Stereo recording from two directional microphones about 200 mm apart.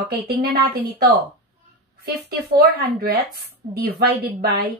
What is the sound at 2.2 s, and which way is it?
A woman's voice, 50° right (ahead or behind).